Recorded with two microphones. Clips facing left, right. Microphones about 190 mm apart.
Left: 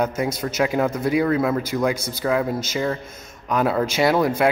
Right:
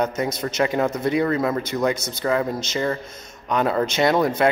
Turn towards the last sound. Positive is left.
turn(degrees=5)  # may be behind; listen again after turning